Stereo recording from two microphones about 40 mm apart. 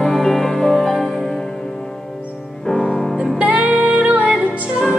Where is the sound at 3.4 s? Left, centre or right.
Right.